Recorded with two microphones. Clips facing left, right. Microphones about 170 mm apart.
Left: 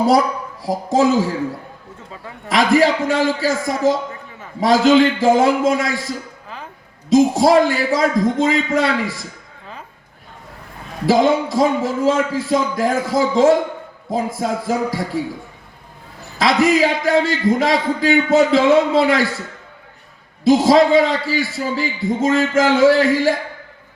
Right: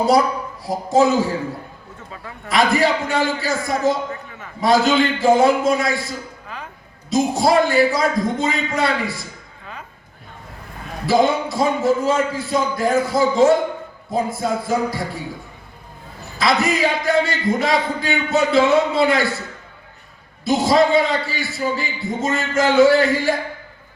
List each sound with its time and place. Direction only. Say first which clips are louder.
0.6 s a man's voice: even; 90° left
2.5 s a man's voice: left 3 dB; 90° left
4.1 s a sound: right 3 dB; 30° left (ahead or behind)
4.6 s a man's voice: left 4 dB; 90° left
11.0 s a man's voice: left 2 dB; 90° left
16.4 s a man's voice: left 4 dB; 90° left
20.4 s a man's voice: left 4 dB; 90° left